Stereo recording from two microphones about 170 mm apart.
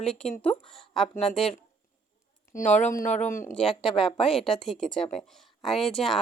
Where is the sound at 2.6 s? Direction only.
45° left (ahead or behind).